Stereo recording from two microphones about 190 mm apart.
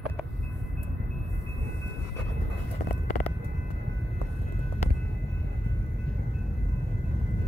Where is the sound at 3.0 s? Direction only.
40° left (ahead or behind).